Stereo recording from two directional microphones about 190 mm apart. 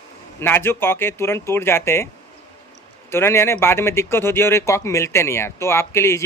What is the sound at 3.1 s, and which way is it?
Speech, 15° left (ahead or behind).